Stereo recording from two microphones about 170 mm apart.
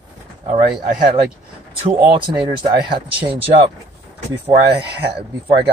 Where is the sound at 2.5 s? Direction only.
30° right (ahead or behind).